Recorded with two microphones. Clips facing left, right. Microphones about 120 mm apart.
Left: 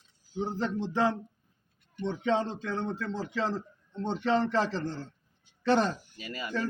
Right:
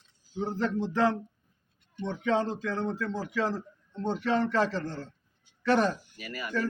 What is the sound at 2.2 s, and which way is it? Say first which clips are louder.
A man's voice: right 2 dB; 25° left (ahead or behind).